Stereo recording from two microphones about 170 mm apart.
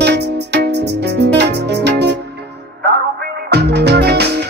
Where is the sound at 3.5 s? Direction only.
75° right (ahead or behind).